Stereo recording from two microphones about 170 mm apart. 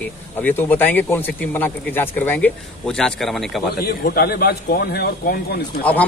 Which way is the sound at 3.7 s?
65° left (ahead or behind).